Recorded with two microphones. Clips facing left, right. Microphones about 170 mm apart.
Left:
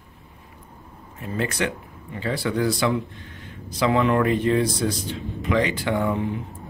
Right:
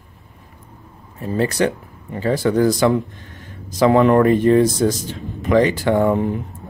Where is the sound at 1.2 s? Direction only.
35° right (ahead or behind).